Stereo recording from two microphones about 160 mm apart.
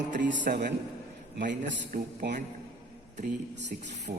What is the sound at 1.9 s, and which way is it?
Speech, 65° right (ahead or behind).